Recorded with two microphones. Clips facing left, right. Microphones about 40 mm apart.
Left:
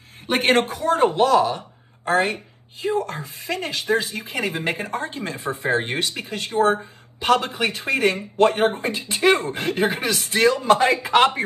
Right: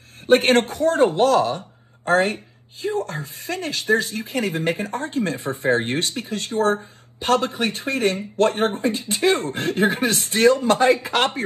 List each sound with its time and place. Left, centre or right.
0.3 s a woman's voice: left
5.7 s speech: left
6.1 s a woman's voice: left